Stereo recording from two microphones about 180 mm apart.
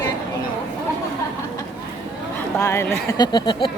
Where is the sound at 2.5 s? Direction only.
15° left (ahead or behind).